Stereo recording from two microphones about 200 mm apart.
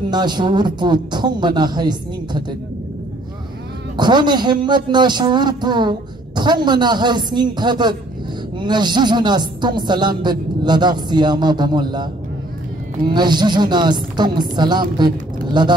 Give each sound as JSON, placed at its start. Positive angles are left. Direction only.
{"t": 0.1, "sound": "speech", "side_deg": -20}
{"t": 3.9, "sound": "speech", "side_deg": -20}
{"t": 13.1, "sound": "speech", "side_deg": -20}